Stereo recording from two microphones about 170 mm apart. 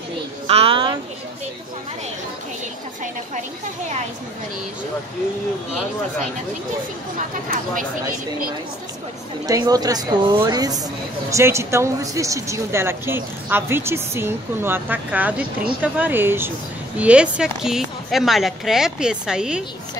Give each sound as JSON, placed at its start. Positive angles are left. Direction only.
{"t": 0.5, "sound": "a sound", "side_deg": -35}
{"t": 7.4, "sound": "speech", "side_deg": -50}
{"t": 9.5, "sound": "speech", "side_deg": -20}